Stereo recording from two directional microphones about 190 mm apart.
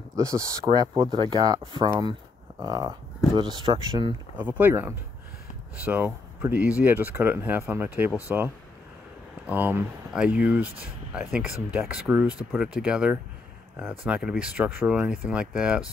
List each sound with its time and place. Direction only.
0.1 s speech: 15° right (ahead or behind)
4.4 s speech: 10° right (ahead or behind)
9.5 s speech: 10° right (ahead or behind)